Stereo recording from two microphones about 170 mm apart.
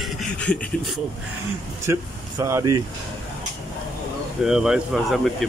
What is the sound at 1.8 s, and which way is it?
Speech, 15° right (ahead or behind).